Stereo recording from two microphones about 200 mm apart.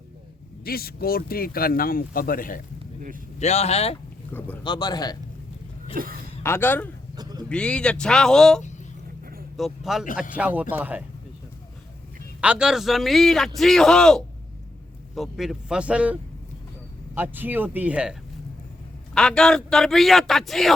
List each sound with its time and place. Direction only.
0.6 s speech: 50° left (ahead or behind)
3.3 s speech: 35° left (ahead or behind)
4.3 s speech: 10° left (ahead or behind)
4.6 s speech: 20° left (ahead or behind)
5.9 s speech: 45° right (ahead or behind)
6.4 s a man's voice: 10° left (ahead or behind)
7.2 s a sound: 20° right (ahead or behind)
7.5 s a man's voice: 5° left (ahead or behind)
12.4 s a man's voice: 5° right (ahead or behind)
17.2 s a man's voice: 10° right (ahead or behind)